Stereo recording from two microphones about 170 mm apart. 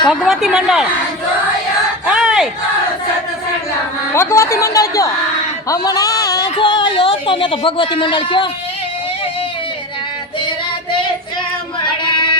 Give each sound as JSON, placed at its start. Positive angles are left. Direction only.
{"t": 0.1, "sound": "a woman's voice", "side_deg": 0}
{"t": 2.0, "sound": "battle cry", "side_deg": -5}
{"t": 4.1, "sound": "speech", "side_deg": 15}
{"t": 11.8, "sound": "female singing", "side_deg": 30}